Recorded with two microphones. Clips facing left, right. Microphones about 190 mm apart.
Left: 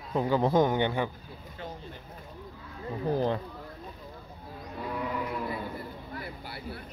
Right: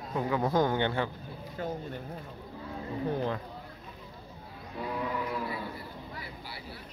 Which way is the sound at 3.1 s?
35° left (ahead or behind).